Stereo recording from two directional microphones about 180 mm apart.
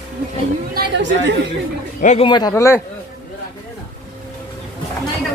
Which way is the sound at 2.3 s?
20° left (ahead or behind).